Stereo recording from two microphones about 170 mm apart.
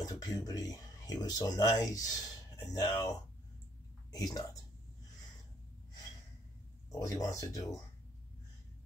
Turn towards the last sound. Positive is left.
turn(degrees=20)  # may be behind; listen again after turning